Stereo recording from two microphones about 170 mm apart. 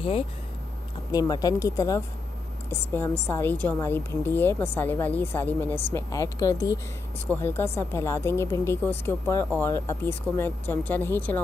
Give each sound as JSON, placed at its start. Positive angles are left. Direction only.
{"t": 1.1, "sound": "a woman's voice", "side_deg": 20}